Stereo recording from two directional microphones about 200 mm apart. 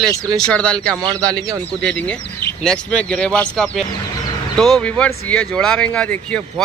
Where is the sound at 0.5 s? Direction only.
5° left (ahead or behind).